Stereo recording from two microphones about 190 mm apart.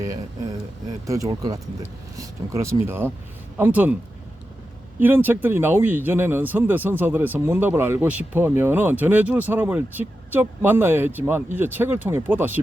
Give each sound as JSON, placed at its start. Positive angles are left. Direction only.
{"t": 1.0, "sound": "speech", "side_deg": -15}
{"t": 4.9, "sound": "speech", "side_deg": -10}